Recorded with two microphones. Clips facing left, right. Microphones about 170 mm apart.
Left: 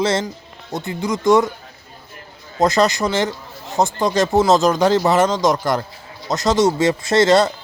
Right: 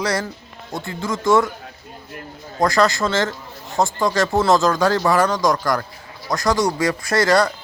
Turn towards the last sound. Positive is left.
turn(degrees=25)  # may be behind; listen again after turning